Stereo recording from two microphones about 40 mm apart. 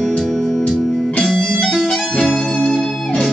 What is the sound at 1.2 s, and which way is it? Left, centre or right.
Music, centre.